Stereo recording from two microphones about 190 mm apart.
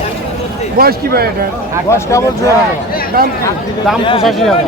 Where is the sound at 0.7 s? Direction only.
55° right (ahead or behind).